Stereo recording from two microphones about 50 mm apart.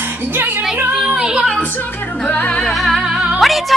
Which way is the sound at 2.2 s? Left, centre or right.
Left.